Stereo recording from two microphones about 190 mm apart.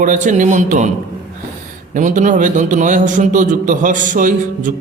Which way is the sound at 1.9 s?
40° right (ahead or behind).